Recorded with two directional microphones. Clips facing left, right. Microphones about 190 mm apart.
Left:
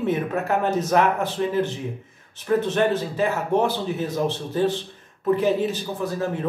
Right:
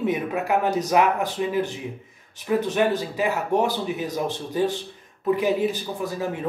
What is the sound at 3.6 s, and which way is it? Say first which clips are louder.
Speech: left 1 dB; 15° right (ahead or behind).